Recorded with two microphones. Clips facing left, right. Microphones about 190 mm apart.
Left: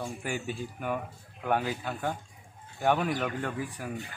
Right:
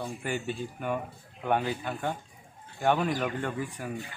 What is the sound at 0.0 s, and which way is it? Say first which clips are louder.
Speech: right 1 dB; 10° left (ahead or behind).